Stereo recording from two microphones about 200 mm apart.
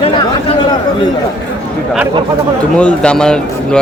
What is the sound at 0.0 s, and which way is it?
Chatter, 30° left (ahead or behind).